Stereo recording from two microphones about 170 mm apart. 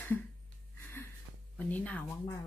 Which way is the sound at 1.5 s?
10° left (ahead or behind).